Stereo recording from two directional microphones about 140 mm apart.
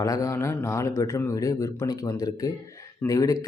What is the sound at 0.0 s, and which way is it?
A man's voice, 25° left (ahead or behind).